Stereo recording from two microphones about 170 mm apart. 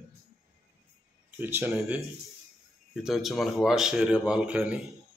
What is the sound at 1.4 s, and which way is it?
Speech, 15° right (ahead or behind).